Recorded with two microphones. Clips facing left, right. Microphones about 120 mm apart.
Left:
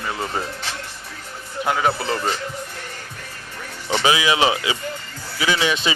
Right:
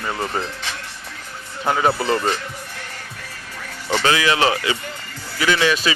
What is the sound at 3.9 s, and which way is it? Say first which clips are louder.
Speech: even; 15° left (ahead or behind).